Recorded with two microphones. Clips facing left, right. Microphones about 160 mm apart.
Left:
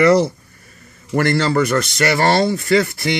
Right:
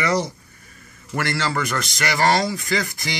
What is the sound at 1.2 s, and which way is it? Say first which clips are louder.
Speech: left 8 dB; 45° left (ahead or behind).